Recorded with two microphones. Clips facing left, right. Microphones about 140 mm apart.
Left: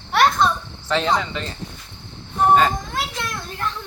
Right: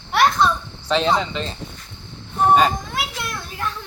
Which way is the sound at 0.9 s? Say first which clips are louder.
Right 2 dB; 20° right (ahead or behind).